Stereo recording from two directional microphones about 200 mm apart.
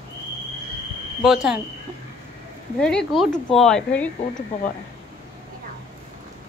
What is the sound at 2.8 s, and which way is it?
Speech, 5° left (ahead or behind).